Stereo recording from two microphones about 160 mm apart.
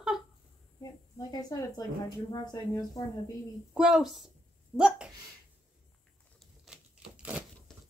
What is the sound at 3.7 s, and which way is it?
A woman's voice, 5° right (ahead or behind).